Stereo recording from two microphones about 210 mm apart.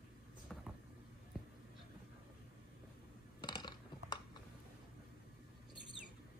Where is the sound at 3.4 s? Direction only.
20° left (ahead or behind).